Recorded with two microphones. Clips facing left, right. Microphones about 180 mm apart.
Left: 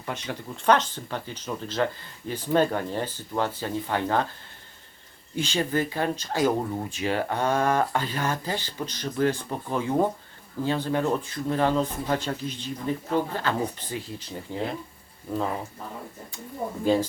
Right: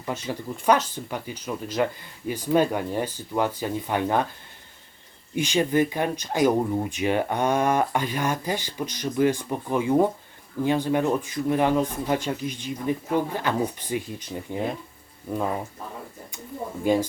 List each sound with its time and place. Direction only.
0.0 s speech: 5° right (ahead or behind)
5.3 s speech: 15° right (ahead or behind)
16.8 s speech: 15° right (ahead or behind)